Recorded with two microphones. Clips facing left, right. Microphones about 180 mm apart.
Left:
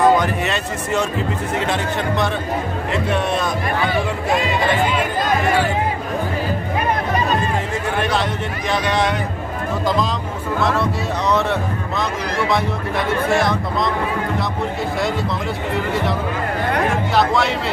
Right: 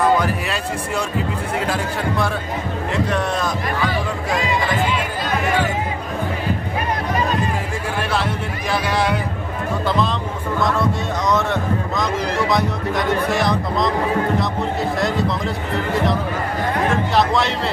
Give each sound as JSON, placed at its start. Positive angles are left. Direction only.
{"t": 0.2, "sound": "speech", "side_deg": -5}
{"t": 4.3, "sound": "music", "side_deg": 60}
{"t": 8.8, "sound": "a sound", "side_deg": -5}
{"t": 13.4, "sound": "speech", "side_deg": 0}
{"t": 15.0, "sound": "speech", "side_deg": 0}
{"t": 16.9, "sound": "speech", "side_deg": 0}